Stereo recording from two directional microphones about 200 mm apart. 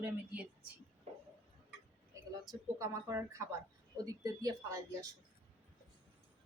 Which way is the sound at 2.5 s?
15° right (ahead or behind).